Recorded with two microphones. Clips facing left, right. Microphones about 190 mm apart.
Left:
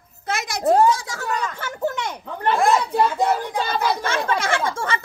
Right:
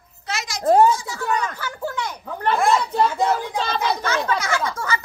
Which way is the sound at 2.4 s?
5° left (ahead or behind).